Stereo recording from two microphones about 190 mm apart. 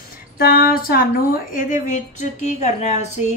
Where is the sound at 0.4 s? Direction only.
50° left (ahead or behind).